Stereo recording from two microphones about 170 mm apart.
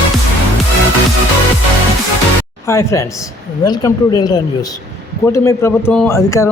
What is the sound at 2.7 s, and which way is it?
A man's voice, 15° left (ahead or behind).